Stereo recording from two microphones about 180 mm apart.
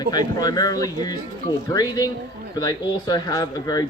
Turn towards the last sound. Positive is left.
turn(degrees=20)  # may be behind; listen again after turning